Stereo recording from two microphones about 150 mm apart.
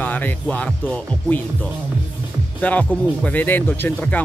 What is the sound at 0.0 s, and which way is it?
Speech, 10° left (ahead or behind).